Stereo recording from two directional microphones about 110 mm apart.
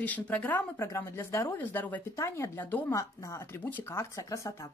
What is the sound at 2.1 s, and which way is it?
Speech, 25° left (ahead or behind).